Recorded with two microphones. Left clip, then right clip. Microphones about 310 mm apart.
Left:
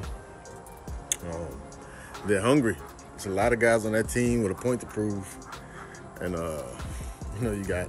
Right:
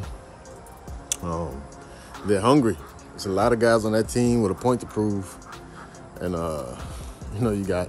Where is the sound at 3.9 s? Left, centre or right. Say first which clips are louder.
Right 4 dB; centre.